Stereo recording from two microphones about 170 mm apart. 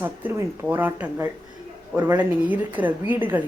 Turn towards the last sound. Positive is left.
turn(degrees=-10)  # may be behind; listen again after turning